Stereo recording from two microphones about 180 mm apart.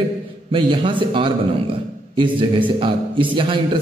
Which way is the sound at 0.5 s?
30° right (ahead or behind).